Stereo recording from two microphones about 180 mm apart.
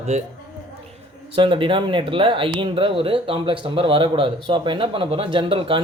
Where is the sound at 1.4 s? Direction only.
30° right (ahead or behind).